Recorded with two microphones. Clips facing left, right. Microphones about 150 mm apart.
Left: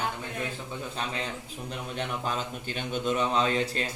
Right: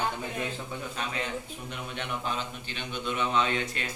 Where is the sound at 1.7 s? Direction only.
40° left (ahead or behind).